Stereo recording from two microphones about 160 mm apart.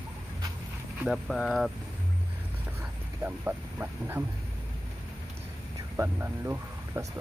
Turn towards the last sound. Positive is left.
turn(degrees=-15)  # may be behind; listen again after turning